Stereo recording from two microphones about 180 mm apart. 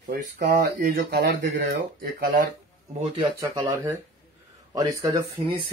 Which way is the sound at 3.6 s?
15° right (ahead or behind).